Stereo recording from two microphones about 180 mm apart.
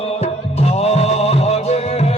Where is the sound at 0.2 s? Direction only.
35° left (ahead or behind).